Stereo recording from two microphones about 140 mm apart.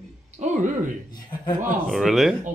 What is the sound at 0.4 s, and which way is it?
Speech, 60° right (ahead or behind).